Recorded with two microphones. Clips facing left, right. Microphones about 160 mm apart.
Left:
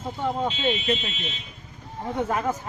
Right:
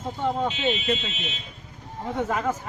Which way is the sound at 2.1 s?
15° left (ahead or behind).